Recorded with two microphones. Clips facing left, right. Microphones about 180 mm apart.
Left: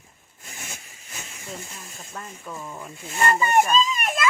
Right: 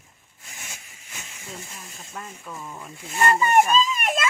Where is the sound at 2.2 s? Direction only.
10° right (ahead or behind).